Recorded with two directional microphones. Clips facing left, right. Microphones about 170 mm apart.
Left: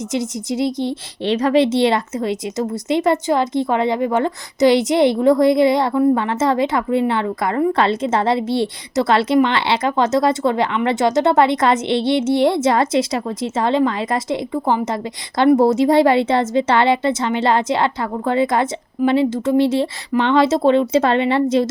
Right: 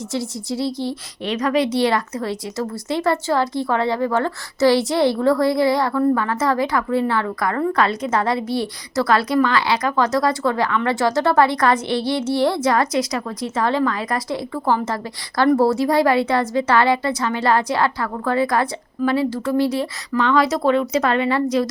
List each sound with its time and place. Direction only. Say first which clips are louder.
0.1 s a woman's voice: left 3 dB; 20° left (ahead or behind)